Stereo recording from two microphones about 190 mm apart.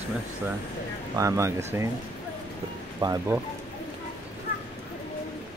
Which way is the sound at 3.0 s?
20° right (ahead or behind).